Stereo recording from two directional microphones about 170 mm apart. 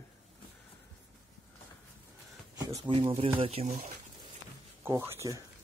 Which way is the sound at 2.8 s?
30° right (ahead or behind).